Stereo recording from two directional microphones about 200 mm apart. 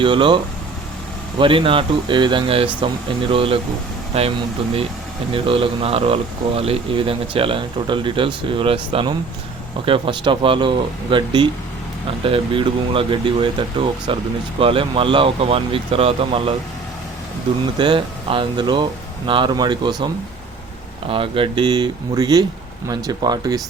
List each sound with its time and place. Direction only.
0.0 s speech: 25° right (ahead or behind)
1.4 s speech: 25° right (ahead or behind)
17.7 s speech: 25° right (ahead or behind)
21.1 s speech: 25° right (ahead or behind)